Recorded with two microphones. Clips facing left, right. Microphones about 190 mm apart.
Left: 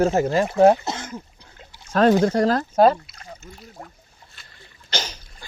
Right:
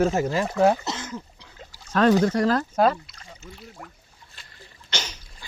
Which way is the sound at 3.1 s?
45° left (ahead or behind).